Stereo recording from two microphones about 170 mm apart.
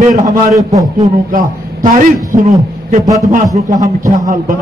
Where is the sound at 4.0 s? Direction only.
50° right (ahead or behind).